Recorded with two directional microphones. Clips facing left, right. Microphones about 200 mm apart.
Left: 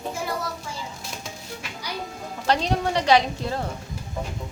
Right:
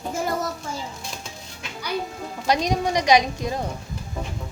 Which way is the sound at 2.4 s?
15° right (ahead or behind).